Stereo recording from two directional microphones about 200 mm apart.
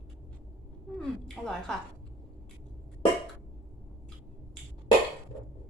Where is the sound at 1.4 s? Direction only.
10° right (ahead or behind).